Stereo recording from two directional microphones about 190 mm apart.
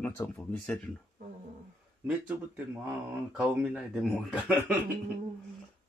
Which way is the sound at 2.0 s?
5° right (ahead or behind).